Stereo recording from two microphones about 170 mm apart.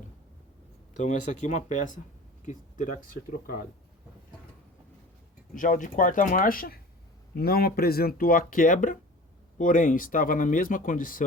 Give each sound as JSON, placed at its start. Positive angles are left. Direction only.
{"t": 0.9, "sound": "speech", "side_deg": 45}
{"t": 5.5, "sound": "speech", "side_deg": 50}